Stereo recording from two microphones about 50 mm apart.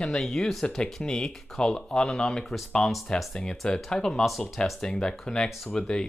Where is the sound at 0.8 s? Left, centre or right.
Left.